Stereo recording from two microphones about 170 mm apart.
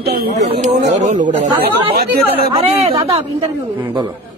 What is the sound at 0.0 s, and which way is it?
Speech, 65° right (ahead or behind).